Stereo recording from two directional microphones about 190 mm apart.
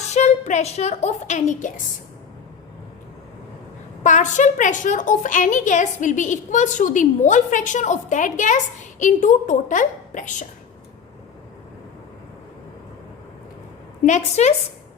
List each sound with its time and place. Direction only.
0.1 s a woman's voice: 40° left (ahead or behind)
4.0 s a woman's voice: 40° left (ahead or behind)
14.0 s a woman's voice: 40° left (ahead or behind)